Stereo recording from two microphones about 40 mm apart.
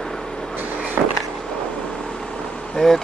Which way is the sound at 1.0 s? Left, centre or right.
Right.